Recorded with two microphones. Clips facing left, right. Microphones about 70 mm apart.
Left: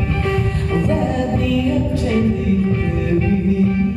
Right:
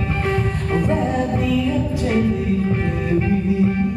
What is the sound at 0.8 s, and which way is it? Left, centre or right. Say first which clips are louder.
Music: left 1 dB; centre.